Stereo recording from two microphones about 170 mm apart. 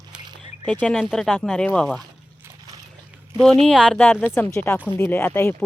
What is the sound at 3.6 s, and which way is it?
Speech, 5° left (ahead or behind).